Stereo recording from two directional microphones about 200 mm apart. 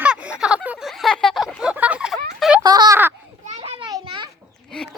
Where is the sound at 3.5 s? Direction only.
25° right (ahead or behind).